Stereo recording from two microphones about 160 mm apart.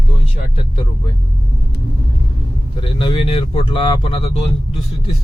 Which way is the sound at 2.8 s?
30° left (ahead or behind).